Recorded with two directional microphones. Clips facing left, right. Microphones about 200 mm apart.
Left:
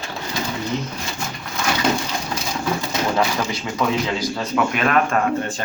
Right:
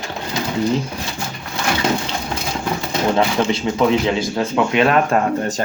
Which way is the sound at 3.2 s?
25° right (ahead or behind).